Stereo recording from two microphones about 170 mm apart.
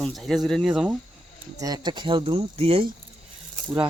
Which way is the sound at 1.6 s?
25° right (ahead or behind).